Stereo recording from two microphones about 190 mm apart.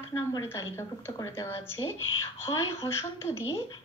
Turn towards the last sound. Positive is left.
turn(degrees=15)  # may be behind; listen again after turning